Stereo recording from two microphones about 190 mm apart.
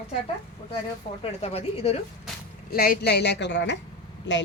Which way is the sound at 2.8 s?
55° left (ahead or behind).